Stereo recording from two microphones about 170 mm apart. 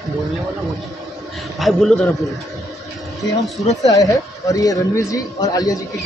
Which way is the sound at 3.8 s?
20° left (ahead or behind).